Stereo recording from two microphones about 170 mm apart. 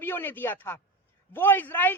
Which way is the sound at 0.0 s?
10° left (ahead or behind).